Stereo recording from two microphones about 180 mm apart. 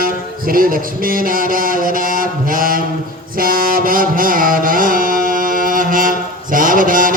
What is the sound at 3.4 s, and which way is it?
Music, 55° right (ahead or behind).